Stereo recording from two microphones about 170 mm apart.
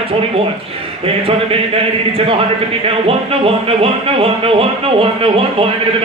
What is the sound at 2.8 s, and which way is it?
Speech, 35° right (ahead or behind).